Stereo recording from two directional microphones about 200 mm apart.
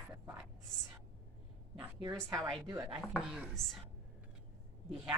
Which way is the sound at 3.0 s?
5° right (ahead or behind).